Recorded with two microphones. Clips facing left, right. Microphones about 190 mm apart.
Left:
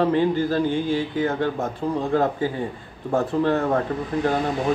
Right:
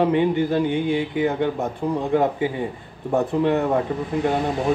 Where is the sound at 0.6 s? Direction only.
65° right (ahead or behind).